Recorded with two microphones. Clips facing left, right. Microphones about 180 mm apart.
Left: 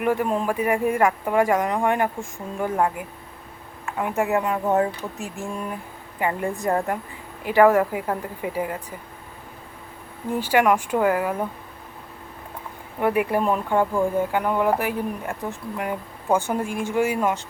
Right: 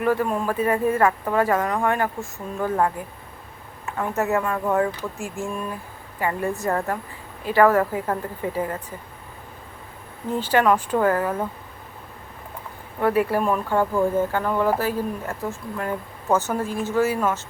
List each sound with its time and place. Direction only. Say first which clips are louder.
0.0 s speech: even; 15° left (ahead or behind)
3.9 s speech: even; 15° left (ahead or behind)
10.3 s speech: even; 10° left (ahead or behind)
13.0 s speech: right 1 dB; 15° left (ahead or behind)